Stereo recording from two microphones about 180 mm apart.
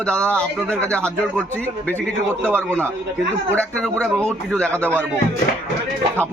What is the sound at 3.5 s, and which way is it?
Speech, 5° left (ahead or behind).